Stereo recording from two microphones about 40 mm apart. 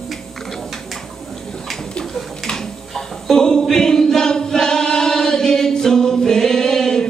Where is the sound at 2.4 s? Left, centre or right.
Centre.